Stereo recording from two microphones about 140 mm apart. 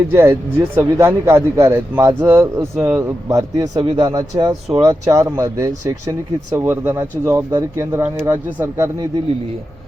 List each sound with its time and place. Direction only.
0.1 s speech: 15° right (ahead or behind)
3.2 s speech: 25° right (ahead or behind)